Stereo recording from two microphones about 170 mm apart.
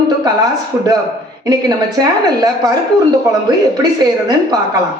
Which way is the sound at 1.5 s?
20° right (ahead or behind).